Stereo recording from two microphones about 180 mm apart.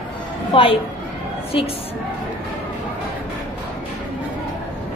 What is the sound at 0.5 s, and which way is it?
Speech, 30° left (ahead or behind).